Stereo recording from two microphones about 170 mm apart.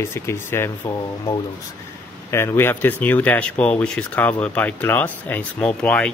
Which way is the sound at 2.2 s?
15° left (ahead or behind).